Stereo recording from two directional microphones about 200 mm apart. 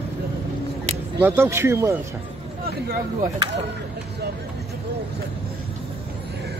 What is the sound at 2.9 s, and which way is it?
Speech, 35° right (ahead or behind).